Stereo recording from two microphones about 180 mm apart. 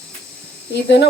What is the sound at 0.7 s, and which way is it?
Speech, 70° left (ahead or behind).